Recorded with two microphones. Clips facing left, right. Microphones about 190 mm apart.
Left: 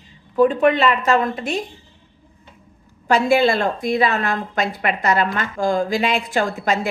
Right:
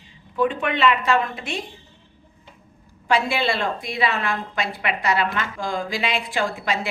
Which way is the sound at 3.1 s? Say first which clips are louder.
Left 6 dB; 45° left (ahead or behind).